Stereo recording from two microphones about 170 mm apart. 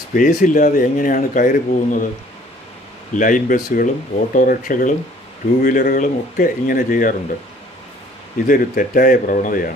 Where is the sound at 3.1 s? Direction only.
50° left (ahead or behind).